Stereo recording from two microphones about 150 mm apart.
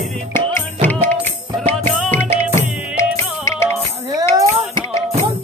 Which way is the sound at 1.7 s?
10° left (ahead or behind).